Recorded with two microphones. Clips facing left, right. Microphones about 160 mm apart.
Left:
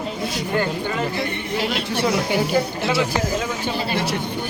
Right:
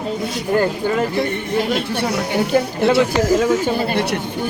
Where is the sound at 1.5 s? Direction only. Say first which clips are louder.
Right 4 dB; 55° right (ahead or behind).